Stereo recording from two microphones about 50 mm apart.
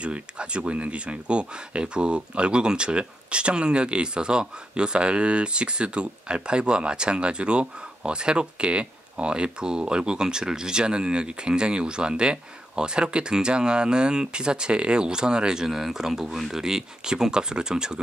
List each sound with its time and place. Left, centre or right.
0.0 s speech: right